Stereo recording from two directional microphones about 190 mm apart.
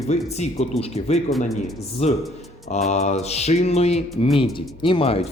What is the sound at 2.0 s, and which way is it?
A man's voice, 35° left (ahead or behind).